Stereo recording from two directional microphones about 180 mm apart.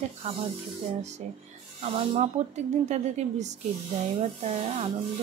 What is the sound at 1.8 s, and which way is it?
Speech, 35° right (ahead or behind).